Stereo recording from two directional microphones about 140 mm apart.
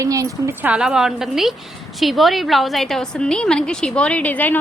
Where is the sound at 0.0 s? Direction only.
25° right (ahead or behind).